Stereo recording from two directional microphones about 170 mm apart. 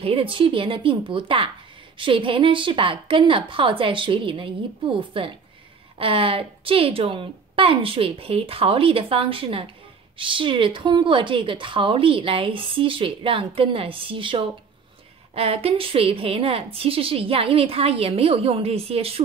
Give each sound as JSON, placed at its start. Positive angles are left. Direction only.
{"t": 0.0, "sound": "a woman's voice", "side_deg": -30}